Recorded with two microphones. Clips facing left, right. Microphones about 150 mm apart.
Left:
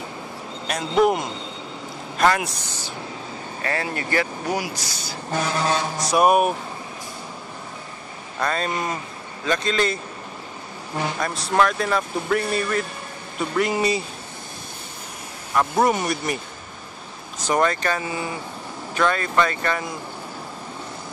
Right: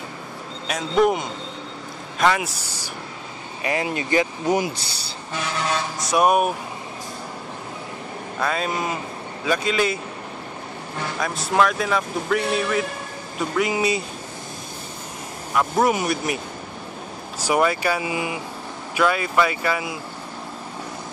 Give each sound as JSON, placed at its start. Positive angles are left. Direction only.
{"t": 0.7, "sound": "speech", "side_deg": 0}
{"t": 5.3, "sound": "speech", "side_deg": 35}
{"t": 6.0, "sound": "speech", "side_deg": 0}
{"t": 8.4, "sound": "speech", "side_deg": -5}
{"t": 11.1, "sound": "speech", "side_deg": 0}
{"t": 12.4, "sound": "a man's voice", "side_deg": -65}
{"t": 13.4, "sound": "speech", "side_deg": 0}
{"t": 15.5, "sound": "speech", "side_deg": -5}
{"t": 17.4, "sound": "speech", "side_deg": -10}